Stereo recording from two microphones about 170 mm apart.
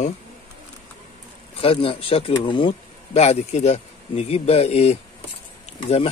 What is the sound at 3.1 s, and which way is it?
Speech, 40° left (ahead or behind).